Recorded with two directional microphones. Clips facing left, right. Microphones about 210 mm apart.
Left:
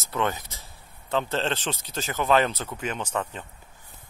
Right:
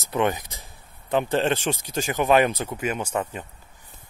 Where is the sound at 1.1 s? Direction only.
15° right (ahead or behind).